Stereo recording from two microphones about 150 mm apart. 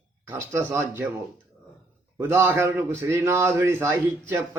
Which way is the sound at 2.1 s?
15° right (ahead or behind).